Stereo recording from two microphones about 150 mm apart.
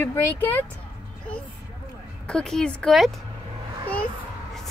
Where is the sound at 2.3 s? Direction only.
5° left (ahead or behind).